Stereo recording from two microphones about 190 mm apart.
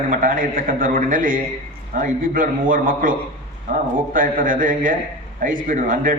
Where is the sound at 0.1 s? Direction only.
45° right (ahead or behind).